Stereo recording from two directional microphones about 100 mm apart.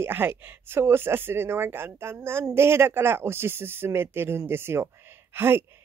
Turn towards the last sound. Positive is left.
turn(degrees=-25)  # may be behind; listen again after turning